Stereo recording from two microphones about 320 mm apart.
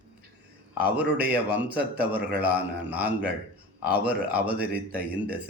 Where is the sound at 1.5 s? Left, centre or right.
Centre.